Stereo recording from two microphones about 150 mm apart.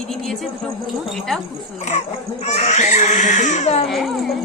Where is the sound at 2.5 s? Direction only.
50° left (ahead or behind).